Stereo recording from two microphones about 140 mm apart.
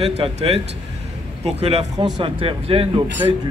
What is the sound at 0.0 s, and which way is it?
Speech, 45° right (ahead or behind).